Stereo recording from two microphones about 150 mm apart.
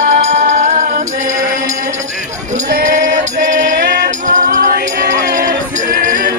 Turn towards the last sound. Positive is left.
turn(degrees=-70)  # may be behind; listen again after turning